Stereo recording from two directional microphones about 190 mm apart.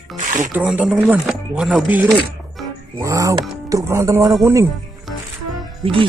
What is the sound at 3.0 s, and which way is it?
Speech, 15° right (ahead or behind).